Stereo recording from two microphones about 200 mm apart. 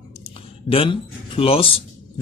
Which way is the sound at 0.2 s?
30° left (ahead or behind).